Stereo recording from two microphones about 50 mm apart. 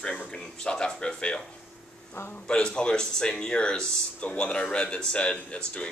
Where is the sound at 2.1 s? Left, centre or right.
Left.